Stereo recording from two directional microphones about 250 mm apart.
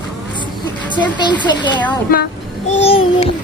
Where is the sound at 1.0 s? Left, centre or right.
Centre.